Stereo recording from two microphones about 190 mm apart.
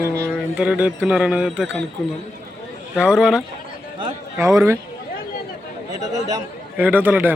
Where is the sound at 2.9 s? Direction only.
5° right (ahead or behind).